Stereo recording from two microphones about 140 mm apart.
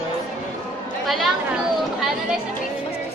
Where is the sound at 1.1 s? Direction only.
Centre (ahead or behind).